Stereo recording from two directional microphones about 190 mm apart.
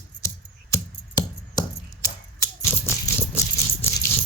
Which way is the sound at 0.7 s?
20° left (ahead or behind).